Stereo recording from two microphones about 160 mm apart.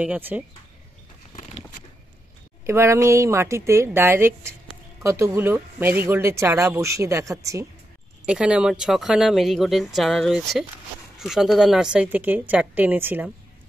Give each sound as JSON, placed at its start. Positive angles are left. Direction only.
{"t": 0.0, "sound": "speech", "side_deg": -10}
{"t": 2.6, "sound": "speech", "side_deg": -15}
{"t": 8.3, "sound": "speech", "side_deg": -5}